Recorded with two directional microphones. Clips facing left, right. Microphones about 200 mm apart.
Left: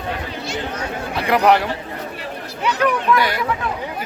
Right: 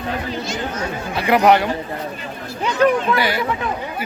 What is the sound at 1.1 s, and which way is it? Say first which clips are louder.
Speech: right 1 dB; centre (ahead or behind).